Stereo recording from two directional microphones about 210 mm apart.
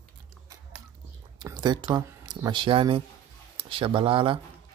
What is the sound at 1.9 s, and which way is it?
Speech, 20° right (ahead or behind).